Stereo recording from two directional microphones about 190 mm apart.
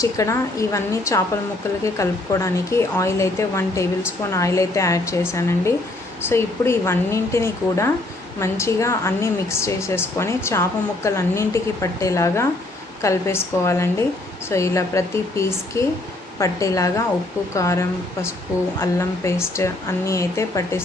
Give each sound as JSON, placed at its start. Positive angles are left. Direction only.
{"t": 0.0, "sound": "a woman's voice", "side_deg": 15}